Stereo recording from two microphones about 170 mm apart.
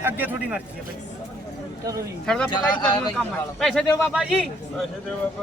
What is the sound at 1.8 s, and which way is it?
Speech, 20° right (ahead or behind).